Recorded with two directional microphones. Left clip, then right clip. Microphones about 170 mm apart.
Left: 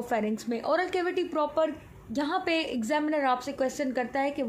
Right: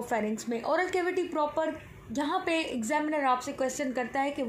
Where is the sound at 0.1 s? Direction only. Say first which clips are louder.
Left 1 dB; 25° left (ahead or behind).